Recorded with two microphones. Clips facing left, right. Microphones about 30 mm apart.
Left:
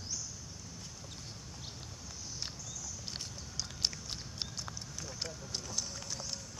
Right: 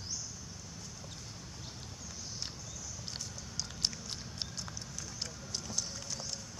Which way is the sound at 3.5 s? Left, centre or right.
Centre.